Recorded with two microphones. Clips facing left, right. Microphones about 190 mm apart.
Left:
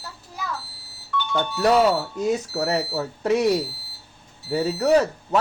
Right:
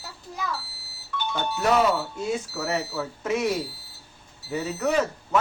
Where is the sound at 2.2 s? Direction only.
35° left (ahead or behind).